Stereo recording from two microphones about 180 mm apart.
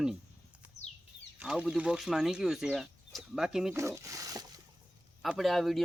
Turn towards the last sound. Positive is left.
turn(degrees=0)  # may be behind; listen again after turning